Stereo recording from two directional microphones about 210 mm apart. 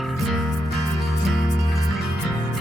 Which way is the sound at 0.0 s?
Centre (ahead or behind).